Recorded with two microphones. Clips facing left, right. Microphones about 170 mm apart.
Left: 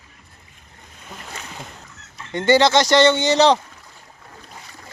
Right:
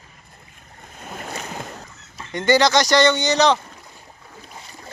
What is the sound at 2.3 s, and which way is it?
Speech, 25° left (ahead or behind).